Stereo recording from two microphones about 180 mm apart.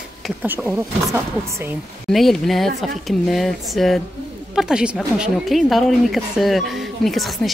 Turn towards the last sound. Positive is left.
turn(degrees=0)  # may be behind; listen again after turning